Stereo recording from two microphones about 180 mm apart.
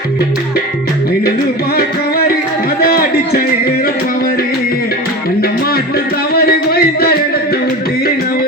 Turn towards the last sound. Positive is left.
turn(degrees=60)  # may be behind; listen again after turning